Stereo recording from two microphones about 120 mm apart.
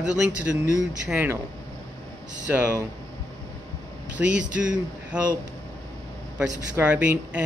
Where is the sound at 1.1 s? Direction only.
15° right (ahead or behind).